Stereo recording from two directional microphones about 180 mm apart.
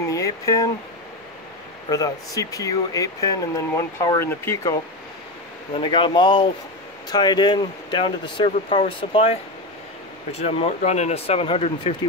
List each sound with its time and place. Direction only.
0.1 s speech: 20° left (ahead or behind)
1.9 s speech: 20° left (ahead or behind)
5.8 s speech: 30° left (ahead or behind)